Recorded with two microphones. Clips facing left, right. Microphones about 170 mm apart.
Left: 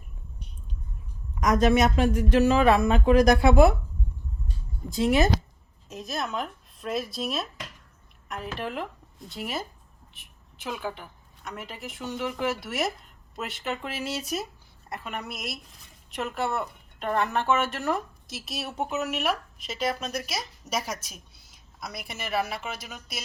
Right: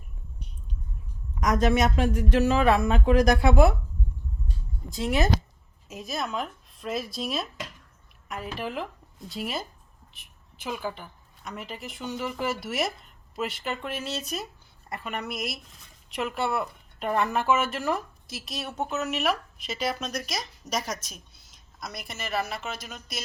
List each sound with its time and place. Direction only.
1.4 s speech: 5° left (ahead or behind)
2.5 s speech: 15° left (ahead or behind)
4.9 s a woman's voice: 5° left (ahead or behind)
18.8 s speech: 15° left (ahead or behind)